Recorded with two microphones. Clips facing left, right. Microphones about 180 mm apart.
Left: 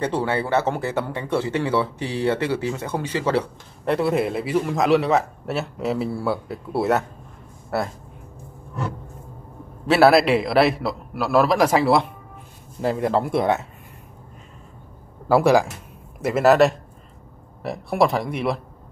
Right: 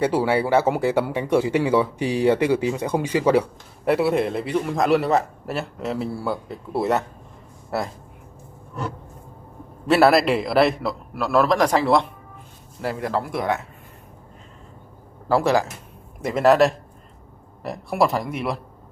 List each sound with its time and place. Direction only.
0.0 s a man's voice: 10° right (ahead or behind)
9.8 s a man's voice: centre (ahead or behind)
12.8 s speech: 25° left (ahead or behind)
15.2 s a man's voice: 10° left (ahead or behind)